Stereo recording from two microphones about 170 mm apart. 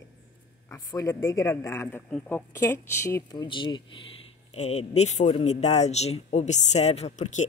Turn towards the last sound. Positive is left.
turn(degrees=45)  # may be behind; listen again after turning